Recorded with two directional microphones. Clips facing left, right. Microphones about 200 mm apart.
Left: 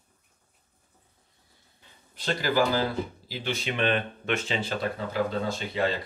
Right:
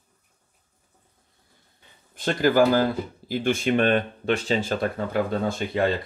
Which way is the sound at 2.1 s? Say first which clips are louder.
Right 7 dB; 50° right (ahead or behind).